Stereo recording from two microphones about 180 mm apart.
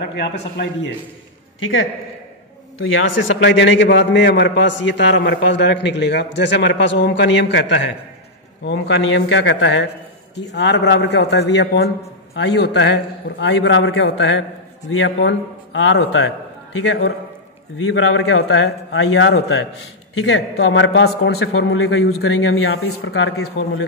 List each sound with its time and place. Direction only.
0.0 s a man's voice: 70° left (ahead or behind)
2.8 s a man's voice: 90° left
8.6 s a man's voice: 85° left
10.3 s a man's voice: 75° left (ahead or behind)